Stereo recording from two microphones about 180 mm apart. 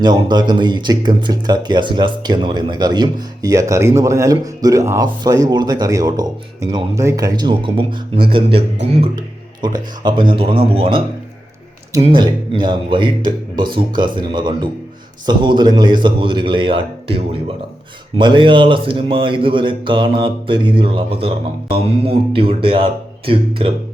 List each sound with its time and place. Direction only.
0.0 s speech: 25° right (ahead or behind)
9.1 s speech: 25° right (ahead or behind)
12.0 s speech: 30° right (ahead or behind)